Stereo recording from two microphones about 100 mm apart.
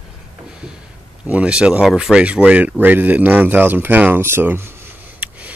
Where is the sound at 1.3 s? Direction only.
10° right (ahead or behind).